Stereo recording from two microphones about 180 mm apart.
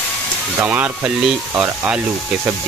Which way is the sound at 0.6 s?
10° right (ahead or behind).